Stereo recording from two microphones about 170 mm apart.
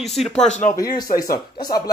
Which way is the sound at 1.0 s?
20° left (ahead or behind).